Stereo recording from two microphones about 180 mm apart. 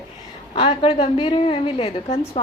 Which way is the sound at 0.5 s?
30° left (ahead or behind).